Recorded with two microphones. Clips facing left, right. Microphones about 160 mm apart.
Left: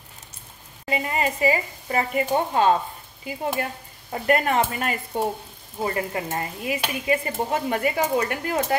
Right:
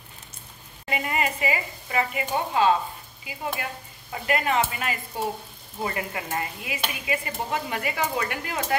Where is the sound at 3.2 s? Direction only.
40° left (ahead or behind).